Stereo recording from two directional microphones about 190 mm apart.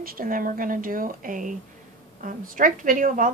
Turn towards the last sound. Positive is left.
turn(degrees=-45)  # may be behind; listen again after turning